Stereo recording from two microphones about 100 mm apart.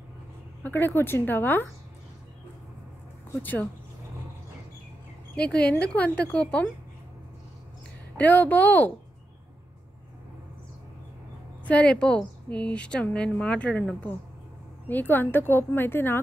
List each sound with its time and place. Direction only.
0.7 s a woman's voice: 20° left (ahead or behind)
5.3 s a woman's voice: 15° left (ahead or behind)
8.2 s a woman's voice: 15° left (ahead or behind)
11.6 s a woman's voice: 10° left (ahead or behind)
14.9 s a woman's voice: 20° left (ahead or behind)